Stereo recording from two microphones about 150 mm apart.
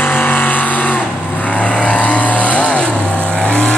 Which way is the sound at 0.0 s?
10° left (ahead or behind).